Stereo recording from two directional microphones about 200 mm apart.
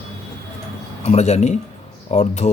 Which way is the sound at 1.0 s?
35° left (ahead or behind).